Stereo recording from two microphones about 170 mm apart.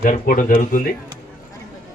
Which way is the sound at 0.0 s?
50° left (ahead or behind).